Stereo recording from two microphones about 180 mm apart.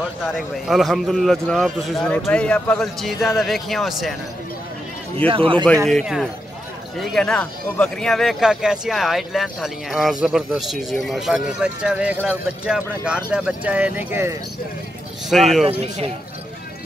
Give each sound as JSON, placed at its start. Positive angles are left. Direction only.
{"t": 0.3, "sound": "a man's voice", "side_deg": 0}
{"t": 5.3, "sound": "a man's voice", "side_deg": -30}
{"t": 5.9, "sound": "a man's voice", "side_deg": 0}
{"t": 15.2, "sound": "a man's voice", "side_deg": 0}